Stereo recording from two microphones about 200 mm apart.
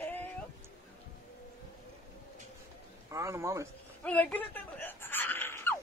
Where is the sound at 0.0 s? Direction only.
10° left (ahead or behind).